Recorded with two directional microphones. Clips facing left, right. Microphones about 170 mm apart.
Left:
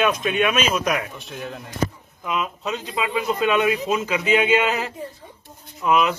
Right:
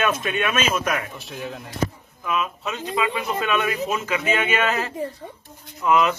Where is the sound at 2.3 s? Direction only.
20° left (ahead or behind).